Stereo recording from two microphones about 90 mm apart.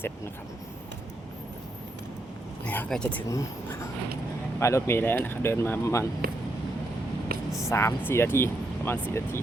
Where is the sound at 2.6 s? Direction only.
20° left (ahead or behind).